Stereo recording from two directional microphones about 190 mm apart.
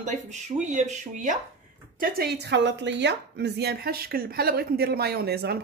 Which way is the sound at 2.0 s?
55° right (ahead or behind).